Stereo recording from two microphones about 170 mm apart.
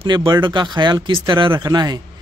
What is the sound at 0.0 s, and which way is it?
Speech, 25° right (ahead or behind).